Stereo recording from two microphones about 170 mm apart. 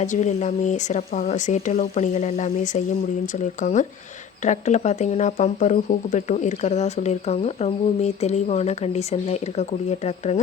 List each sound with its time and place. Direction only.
0.0 s speech: 45° left (ahead or behind)